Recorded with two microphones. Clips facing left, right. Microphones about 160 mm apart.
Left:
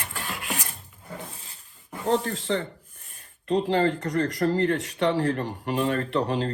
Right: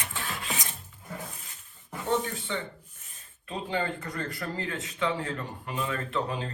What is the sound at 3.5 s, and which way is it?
Speech, 75° left (ahead or behind).